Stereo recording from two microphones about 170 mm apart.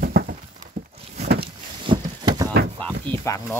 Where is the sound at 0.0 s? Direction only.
65° right (ahead or behind).